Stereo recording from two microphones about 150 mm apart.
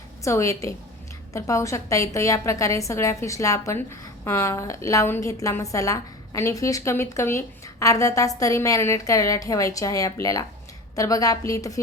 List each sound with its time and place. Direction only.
0.3 s a woman's voice: 20° left (ahead or behind)